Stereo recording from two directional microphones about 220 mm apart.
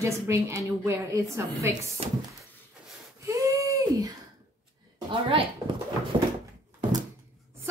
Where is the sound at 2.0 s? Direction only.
30° right (ahead or behind).